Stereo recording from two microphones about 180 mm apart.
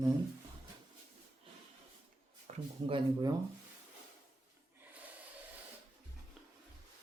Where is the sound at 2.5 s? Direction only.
40° right (ahead or behind).